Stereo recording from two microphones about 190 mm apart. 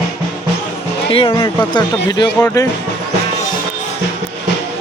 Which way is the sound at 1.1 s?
25° left (ahead or behind).